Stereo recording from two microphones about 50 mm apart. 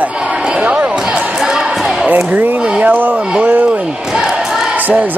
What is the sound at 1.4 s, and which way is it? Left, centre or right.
Music, centre.